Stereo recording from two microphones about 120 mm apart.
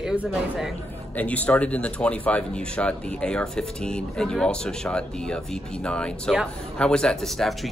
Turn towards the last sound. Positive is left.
turn(degrees=0)  # may be behind; listen again after turning